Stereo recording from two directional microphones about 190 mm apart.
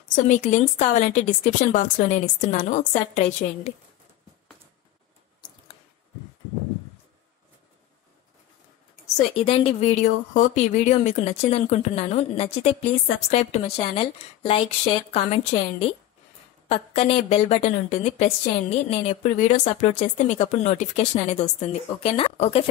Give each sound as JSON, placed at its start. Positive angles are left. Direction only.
{"t": 0.1, "sound": "a woman's voice", "side_deg": 40}
{"t": 9.0, "sound": "a woman's voice", "side_deg": 30}